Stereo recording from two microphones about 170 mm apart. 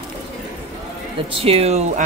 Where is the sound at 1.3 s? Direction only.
35° right (ahead or behind).